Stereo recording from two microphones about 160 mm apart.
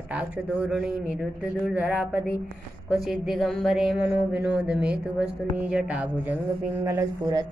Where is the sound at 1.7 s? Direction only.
10° right (ahead or behind).